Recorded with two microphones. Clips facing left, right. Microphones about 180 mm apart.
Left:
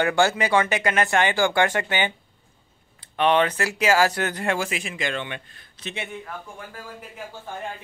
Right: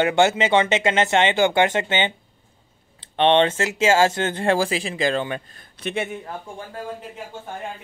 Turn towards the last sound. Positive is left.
turn(degrees=-55)  # may be behind; listen again after turning